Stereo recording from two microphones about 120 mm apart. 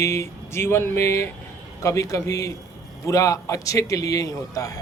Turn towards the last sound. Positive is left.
turn(degrees=25)  # may be behind; listen again after turning